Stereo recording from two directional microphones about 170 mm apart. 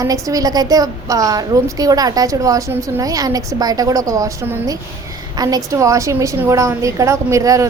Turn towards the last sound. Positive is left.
turn(degrees=-20)  # may be behind; listen again after turning